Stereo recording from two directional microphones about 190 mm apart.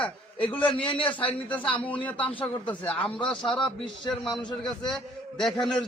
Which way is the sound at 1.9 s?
10° left (ahead or behind).